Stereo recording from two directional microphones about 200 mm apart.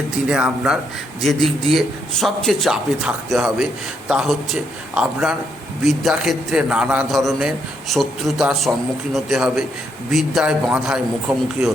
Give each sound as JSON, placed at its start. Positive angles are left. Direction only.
{"t": 0.3, "sound": "a man's voice", "side_deg": -5}